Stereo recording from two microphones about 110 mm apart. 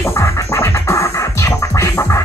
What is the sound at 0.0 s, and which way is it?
Music, 25° left (ahead or behind).